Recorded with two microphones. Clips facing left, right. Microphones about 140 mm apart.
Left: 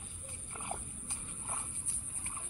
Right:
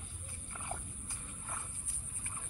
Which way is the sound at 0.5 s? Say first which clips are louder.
Left 1 dB; 20° left (ahead or behind).